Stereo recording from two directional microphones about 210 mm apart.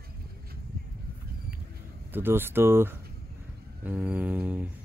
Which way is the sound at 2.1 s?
10° right (ahead or behind).